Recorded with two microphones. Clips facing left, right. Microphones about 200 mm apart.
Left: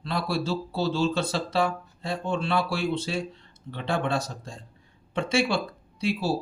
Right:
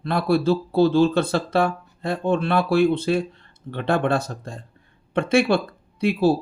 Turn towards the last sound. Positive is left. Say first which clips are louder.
# right 8 dB
turn(degrees=-55)  # may be behind; listen again after turning